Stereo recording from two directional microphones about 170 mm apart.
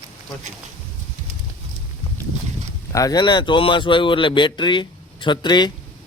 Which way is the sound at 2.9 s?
20° left (ahead or behind).